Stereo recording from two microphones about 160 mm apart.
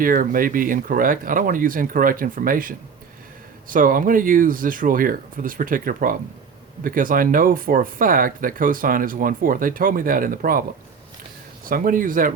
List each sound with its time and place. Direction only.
0.0 s speech: 60° right (ahead or behind)
11.6 s speech: 60° right (ahead or behind)